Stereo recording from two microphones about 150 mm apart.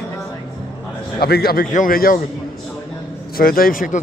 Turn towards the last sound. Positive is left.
turn(degrees=65)  # may be behind; listen again after turning